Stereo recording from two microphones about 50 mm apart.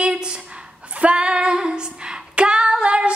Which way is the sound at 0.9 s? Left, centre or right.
Right.